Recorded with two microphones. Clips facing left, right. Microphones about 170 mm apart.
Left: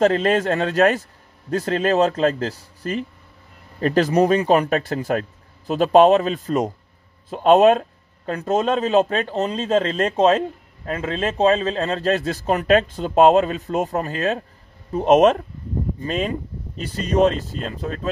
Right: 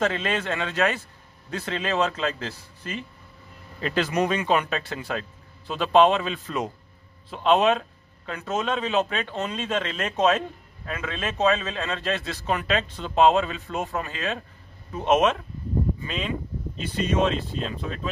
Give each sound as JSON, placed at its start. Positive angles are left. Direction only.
{"t": 0.0, "sound": "a man's voice", "side_deg": 40}